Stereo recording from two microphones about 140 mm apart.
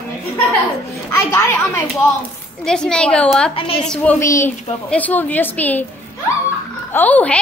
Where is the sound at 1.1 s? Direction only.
20° left (ahead or behind).